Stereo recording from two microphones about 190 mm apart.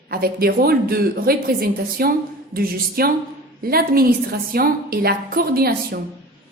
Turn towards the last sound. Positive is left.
turn(degrees=-50)  # may be behind; listen again after turning